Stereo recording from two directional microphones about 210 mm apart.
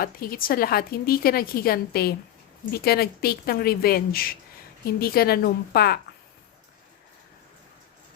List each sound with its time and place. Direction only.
0.0 s a woman's voice: 45° left (ahead or behind)